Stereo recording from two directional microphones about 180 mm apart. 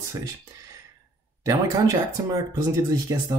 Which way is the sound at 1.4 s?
20° right (ahead or behind).